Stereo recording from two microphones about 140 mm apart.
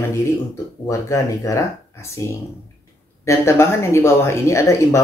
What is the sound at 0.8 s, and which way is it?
Speech, 20° left (ahead or behind).